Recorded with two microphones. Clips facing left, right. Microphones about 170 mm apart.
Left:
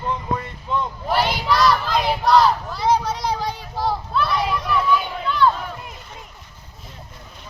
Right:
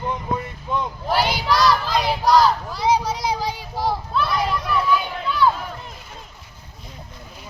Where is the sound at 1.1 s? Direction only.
Centre (ahead or behind).